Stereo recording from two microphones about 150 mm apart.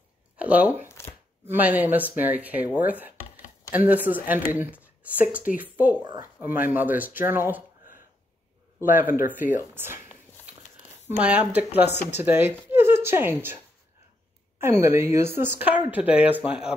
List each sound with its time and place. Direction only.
0.4 s speech: 10° right (ahead or behind)
0.8 s chopping: 15° left (ahead or behind)
1.5 s a woman's voice: 10° right (ahead or behind)
8.7 s a woman's voice: 15° right (ahead or behind)
11.1 s a woman's voice: 10° right (ahead or behind)
14.6 s a woman's voice: 15° right (ahead or behind)